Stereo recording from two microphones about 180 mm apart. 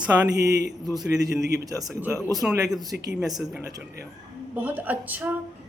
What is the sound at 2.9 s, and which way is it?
Speech, 65° right (ahead or behind).